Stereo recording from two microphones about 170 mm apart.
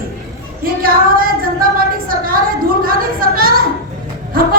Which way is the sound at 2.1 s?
55° right (ahead or behind).